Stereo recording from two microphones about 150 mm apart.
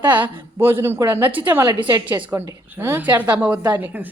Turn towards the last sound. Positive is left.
turn(degrees=-10)  # may be behind; listen again after turning